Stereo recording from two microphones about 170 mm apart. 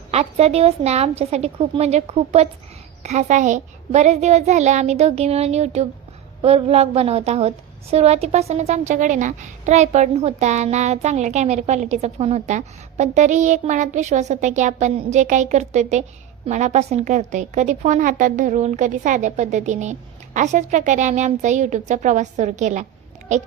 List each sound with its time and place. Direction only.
0.1 s a child's voice: 40° right (ahead or behind)